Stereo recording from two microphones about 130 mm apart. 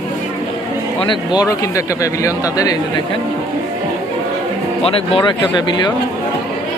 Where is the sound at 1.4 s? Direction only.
25° left (ahead or behind).